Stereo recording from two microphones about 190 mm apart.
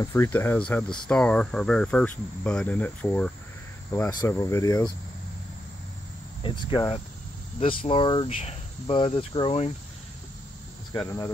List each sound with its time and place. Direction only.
0.0 s speech: 15° left (ahead or behind)
1.0 s cricket: 5° left (ahead or behind)
3.9 s speech: 10° left (ahead or behind)
6.4 s speech: 25° left (ahead or behind)
11.0 s speech: 15° left (ahead or behind)